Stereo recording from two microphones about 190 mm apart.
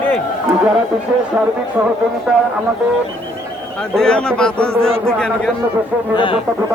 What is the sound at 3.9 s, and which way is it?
Speech, 5° left (ahead or behind).